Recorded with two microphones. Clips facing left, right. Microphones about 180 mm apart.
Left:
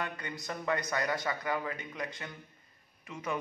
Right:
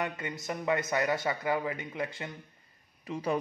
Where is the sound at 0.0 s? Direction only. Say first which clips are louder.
Right 4 dB; 20° right (ahead or behind).